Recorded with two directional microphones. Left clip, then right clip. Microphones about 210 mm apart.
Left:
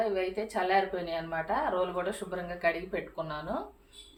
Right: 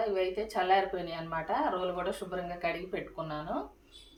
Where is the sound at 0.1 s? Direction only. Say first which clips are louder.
Even; centre (ahead or behind).